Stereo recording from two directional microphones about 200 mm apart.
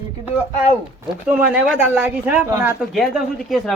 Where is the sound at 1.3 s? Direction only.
5° right (ahead or behind).